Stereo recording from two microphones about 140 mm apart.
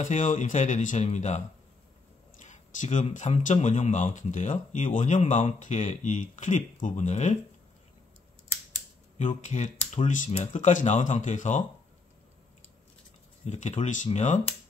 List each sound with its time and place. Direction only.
0.0 s speech: 65° left (ahead or behind)
2.4 s speech: 60° left (ahead or behind)
9.4 s speech: 60° left (ahead or behind)
13.5 s speech: 55° left (ahead or behind)